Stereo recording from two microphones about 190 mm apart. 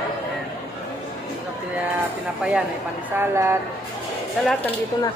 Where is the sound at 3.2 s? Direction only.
15° right (ahead or behind).